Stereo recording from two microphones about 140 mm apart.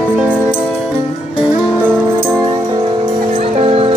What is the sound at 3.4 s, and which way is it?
Music, 45° right (ahead or behind).